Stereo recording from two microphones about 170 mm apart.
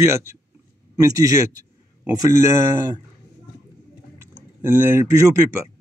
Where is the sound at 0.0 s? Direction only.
15° right (ahead or behind).